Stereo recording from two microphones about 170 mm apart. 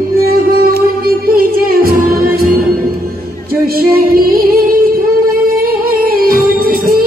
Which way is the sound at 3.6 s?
60° right (ahead or behind).